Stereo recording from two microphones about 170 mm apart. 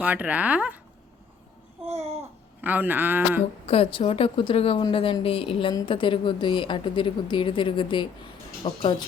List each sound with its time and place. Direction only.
0.0 s speech: 10° right (ahead or behind)
1.8 s babbling: 40° right (ahead or behind)
2.6 s speech: 10° right (ahead or behind)
3.7 s a woman's voice: 35° left (ahead or behind)